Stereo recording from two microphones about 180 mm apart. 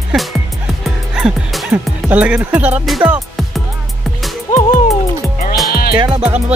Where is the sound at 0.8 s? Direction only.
Centre (ahead or behind).